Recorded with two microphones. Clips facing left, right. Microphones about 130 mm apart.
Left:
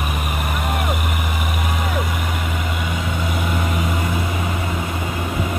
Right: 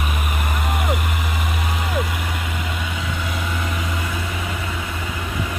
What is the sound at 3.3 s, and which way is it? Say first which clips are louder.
Vehicle: left 4 dB; 15° left (ahead or behind).